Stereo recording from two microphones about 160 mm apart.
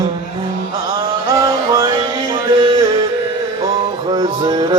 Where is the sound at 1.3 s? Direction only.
20° right (ahead or behind).